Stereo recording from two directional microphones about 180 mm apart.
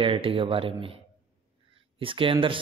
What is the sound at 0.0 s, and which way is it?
Speech, 30° right (ahead or behind).